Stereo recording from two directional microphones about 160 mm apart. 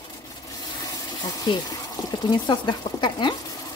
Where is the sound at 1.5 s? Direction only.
30° left (ahead or behind).